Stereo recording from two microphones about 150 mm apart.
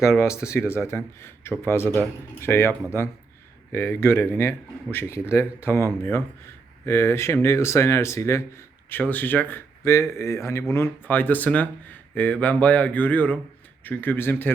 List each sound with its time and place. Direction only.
0.0 s speech: 20° left (ahead or behind)